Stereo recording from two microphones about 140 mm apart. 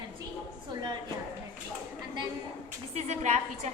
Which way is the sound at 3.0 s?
55° right (ahead or behind).